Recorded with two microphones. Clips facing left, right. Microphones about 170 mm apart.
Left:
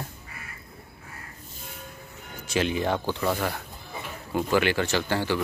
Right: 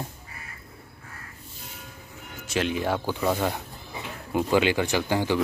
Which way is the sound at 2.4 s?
Centre (ahead or behind).